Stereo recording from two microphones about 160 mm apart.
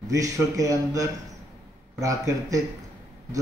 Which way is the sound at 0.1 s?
20° right (ahead or behind).